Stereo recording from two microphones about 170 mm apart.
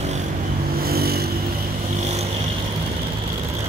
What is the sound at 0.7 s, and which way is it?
Vehicle, 60° right (ahead or behind).